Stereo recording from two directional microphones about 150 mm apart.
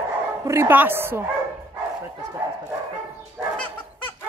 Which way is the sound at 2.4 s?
15° right (ahead or behind).